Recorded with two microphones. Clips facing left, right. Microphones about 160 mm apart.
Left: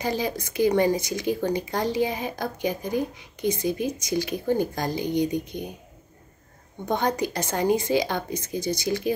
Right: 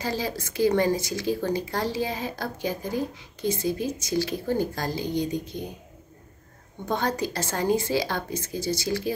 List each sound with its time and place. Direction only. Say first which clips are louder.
0.0 s speech: left 2 dB; 15° left (ahead or behind)
6.9 s speech: left 2 dB; 20° left (ahead or behind)